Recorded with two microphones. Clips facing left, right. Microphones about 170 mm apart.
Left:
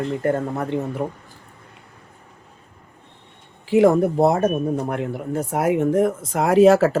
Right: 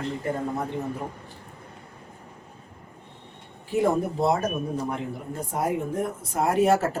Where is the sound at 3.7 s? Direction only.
90° left.